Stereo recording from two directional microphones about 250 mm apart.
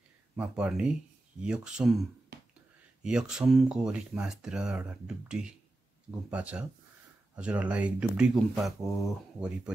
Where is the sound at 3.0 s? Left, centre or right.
Centre.